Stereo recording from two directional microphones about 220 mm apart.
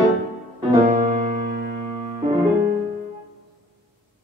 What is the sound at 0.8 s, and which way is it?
Music, 40° right (ahead or behind).